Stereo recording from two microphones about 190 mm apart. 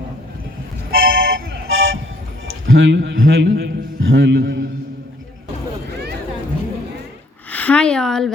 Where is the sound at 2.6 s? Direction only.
90° right.